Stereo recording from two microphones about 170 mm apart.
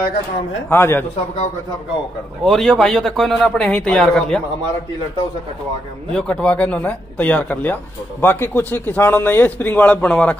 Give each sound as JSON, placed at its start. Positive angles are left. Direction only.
{"t": 0.7, "sound": "speech", "side_deg": 15}
{"t": 2.4, "sound": "a man's voice", "side_deg": 0}
{"t": 6.1, "sound": "speech", "side_deg": 5}